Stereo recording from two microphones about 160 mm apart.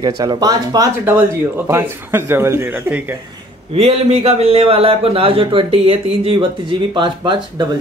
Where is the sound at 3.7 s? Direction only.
40° right (ahead or behind).